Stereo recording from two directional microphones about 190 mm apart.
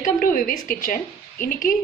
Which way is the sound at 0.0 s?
45° left (ahead or behind).